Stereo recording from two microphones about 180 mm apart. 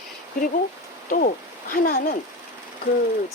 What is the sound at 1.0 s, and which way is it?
Speech, 50° left (ahead or behind).